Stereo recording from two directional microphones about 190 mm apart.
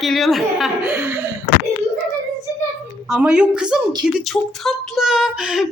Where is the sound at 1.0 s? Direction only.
10° right (ahead or behind).